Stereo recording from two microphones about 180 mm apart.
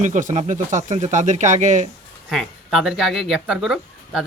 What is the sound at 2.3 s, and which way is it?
Speech, centre (ahead or behind).